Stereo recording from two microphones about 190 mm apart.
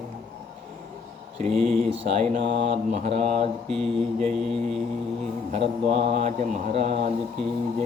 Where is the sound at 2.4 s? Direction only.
30° right (ahead or behind).